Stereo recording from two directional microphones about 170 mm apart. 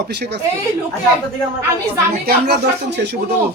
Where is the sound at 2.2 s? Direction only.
75° right (ahead or behind).